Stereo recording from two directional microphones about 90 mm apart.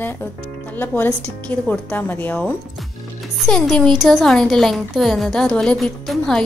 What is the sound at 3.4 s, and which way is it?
A woman's voice, 5° left (ahead or behind).